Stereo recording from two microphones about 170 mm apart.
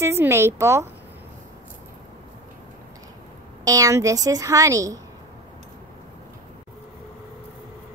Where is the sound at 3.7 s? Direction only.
20° right (ahead or behind).